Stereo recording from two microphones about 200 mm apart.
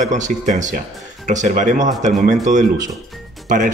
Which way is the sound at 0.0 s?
40° right (ahead or behind).